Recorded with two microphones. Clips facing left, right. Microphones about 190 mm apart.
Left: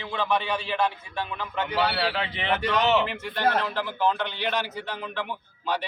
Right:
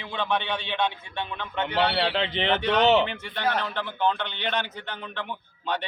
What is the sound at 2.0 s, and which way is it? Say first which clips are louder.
Speech: right 3 dB; 25° right (ahead or behind).